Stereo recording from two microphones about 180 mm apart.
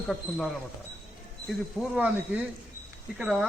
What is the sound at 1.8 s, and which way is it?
Speech, 5° right (ahead or behind).